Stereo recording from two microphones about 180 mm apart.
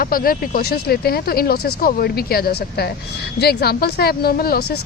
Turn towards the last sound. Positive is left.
turn(degrees=60)  # may be behind; listen again after turning